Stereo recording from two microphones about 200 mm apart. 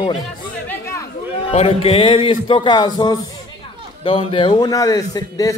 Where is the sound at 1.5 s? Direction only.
30° left (ahead or behind).